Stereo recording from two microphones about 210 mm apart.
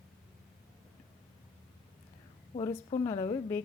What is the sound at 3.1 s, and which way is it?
Speech, 20° left (ahead or behind).